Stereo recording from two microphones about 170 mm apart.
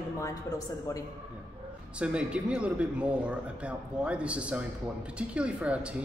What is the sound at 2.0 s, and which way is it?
Speech, 5° right (ahead or behind).